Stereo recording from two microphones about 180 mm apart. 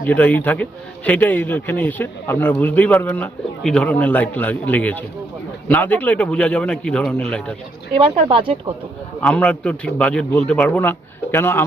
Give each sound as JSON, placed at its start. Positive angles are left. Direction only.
{"t": 0.0, "sound": "a man's voice", "side_deg": 10}
{"t": 7.9, "sound": "speech", "side_deg": -30}
{"t": 9.2, "sound": "a man's voice", "side_deg": 5}